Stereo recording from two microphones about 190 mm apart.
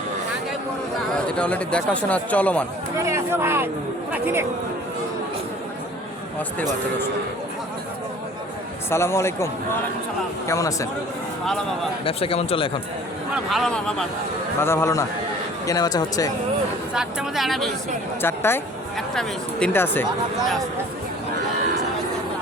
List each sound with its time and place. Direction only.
1.3 s speech: 5° left (ahead or behind)
3.0 s speech: 15° right (ahead or behind)
8.9 s speech: 15° left (ahead or behind)
12.0 s speech: 30° left (ahead or behind)
13.3 s speech: centre (ahead or behind)
14.6 s speech: 15° left (ahead or behind)
16.9 s speech: 5° right (ahead or behind)
18.2 s speech: 10° left (ahead or behind)